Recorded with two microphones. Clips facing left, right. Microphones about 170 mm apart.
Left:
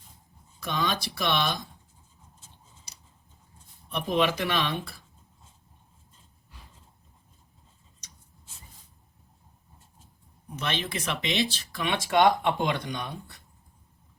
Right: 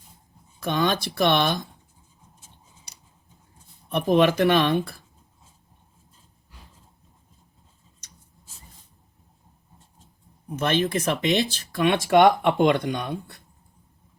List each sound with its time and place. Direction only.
0.6 s speech: 50° right (ahead or behind)
3.8 s speech: 50° right (ahead or behind)
10.5 s speech: 50° right (ahead or behind)